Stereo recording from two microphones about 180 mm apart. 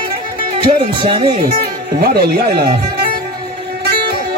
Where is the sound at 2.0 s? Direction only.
60° right (ahead or behind).